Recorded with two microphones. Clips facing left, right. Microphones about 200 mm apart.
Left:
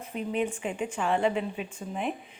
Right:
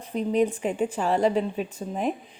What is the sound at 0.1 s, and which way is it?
Speech, 35° right (ahead or behind).